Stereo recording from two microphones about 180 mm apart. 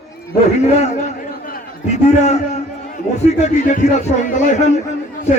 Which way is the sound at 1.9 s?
40° left (ahead or behind).